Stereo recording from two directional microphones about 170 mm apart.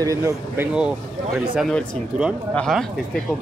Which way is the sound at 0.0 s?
20° right (ahead or behind).